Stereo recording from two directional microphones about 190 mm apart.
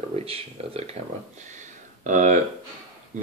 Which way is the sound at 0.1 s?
30° right (ahead or behind).